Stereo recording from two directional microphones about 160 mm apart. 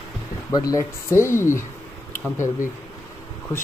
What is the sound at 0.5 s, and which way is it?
Speech, 20° left (ahead or behind).